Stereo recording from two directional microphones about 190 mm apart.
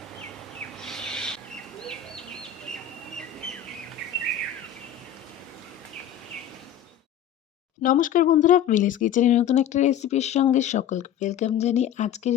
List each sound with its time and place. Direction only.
0.8 s owl: 5° left (ahead or behind)
3.4 s bird: 5° left (ahead or behind)
7.8 s speech: 45° left (ahead or behind)